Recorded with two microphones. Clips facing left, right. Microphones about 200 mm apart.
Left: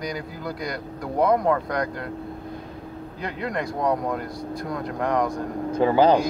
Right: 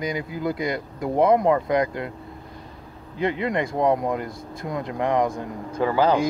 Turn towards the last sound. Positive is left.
turn(degrees=20)  # may be behind; listen again after turning